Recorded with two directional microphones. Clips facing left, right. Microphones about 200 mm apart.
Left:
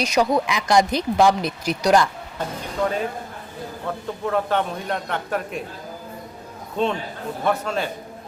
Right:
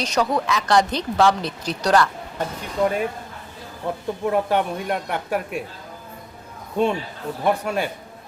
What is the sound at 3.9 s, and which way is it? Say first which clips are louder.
Speech: right 3 dB; 15° right (ahead or behind).